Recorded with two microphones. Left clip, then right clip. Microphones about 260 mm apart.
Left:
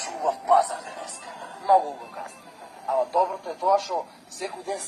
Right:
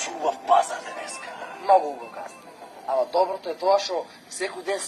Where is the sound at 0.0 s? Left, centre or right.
Right.